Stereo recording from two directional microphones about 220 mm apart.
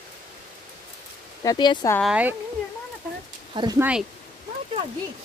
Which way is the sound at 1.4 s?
20° left (ahead or behind).